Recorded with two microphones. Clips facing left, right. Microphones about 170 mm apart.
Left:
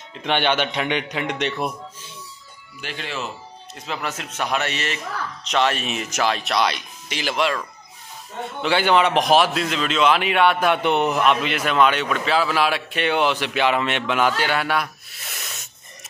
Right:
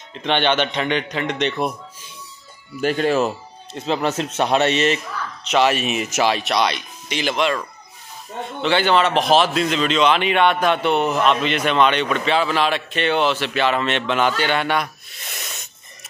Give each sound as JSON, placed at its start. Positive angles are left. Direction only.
{"t": 0.1, "sound": "a man's voice", "side_deg": 5}
{"t": 2.8, "sound": "speech", "side_deg": -45}
{"t": 3.7, "sound": "a man's voice", "side_deg": -30}
{"t": 5.5, "sound": "a man's voice", "side_deg": -5}
{"t": 8.6, "sound": "a man's voice", "side_deg": 10}
{"t": 9.5, "sound": "a man's voice", "side_deg": 0}